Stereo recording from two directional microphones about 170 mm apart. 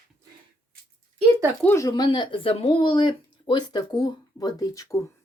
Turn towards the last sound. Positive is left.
turn(degrees=20)  # may be behind; listen again after turning